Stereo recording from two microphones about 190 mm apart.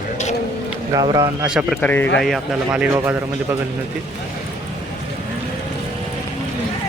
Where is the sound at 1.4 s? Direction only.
5° right (ahead or behind).